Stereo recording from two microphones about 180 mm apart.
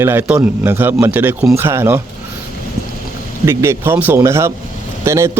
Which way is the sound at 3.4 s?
15° right (ahead or behind).